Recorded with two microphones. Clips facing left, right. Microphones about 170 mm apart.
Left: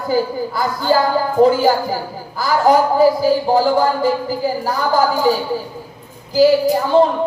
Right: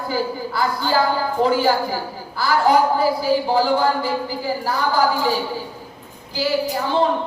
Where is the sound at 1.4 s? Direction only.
45° left (ahead or behind).